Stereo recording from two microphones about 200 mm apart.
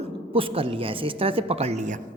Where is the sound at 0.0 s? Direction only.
25° right (ahead or behind).